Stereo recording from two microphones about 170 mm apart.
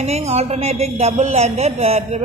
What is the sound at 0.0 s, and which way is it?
Speech, 40° right (ahead or behind).